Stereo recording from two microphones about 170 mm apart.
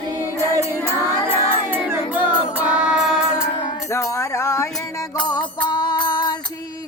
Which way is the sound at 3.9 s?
20° left (ahead or behind).